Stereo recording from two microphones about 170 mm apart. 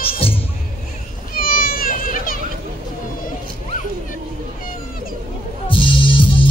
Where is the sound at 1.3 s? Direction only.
60° left (ahead or behind).